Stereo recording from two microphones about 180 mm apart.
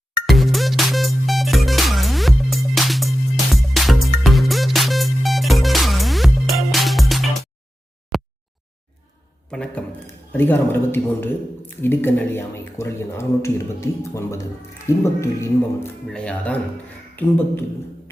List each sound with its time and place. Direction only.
0.3 s music: centre (ahead or behind)
8.1 s a sound: centre (ahead or behind)
9.5 s speech: 5° left (ahead or behind)